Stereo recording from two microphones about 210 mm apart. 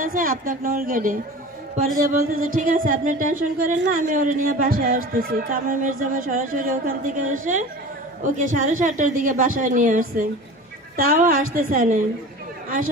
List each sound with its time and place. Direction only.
0.0 s speech: 40° right (ahead or behind)